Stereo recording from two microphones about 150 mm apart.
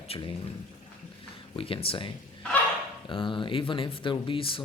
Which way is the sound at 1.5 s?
35° left (ahead or behind).